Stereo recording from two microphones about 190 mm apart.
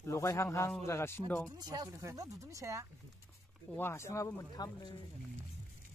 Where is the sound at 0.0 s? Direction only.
15° left (ahead or behind).